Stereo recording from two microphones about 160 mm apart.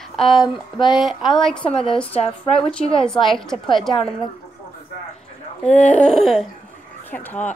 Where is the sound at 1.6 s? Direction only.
35° left (ahead or behind).